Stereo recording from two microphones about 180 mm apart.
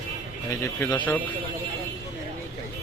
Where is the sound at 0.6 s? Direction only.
15° left (ahead or behind).